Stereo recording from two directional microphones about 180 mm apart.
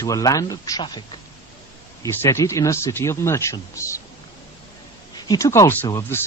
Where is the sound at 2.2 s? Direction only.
15° left (ahead or behind).